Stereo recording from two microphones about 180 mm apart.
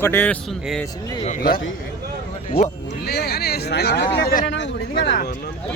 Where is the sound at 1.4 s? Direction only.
55° left (ahead or behind).